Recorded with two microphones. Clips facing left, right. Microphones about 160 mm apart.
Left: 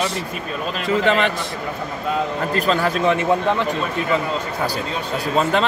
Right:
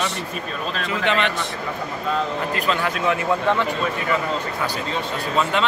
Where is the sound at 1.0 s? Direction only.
40° left (ahead or behind).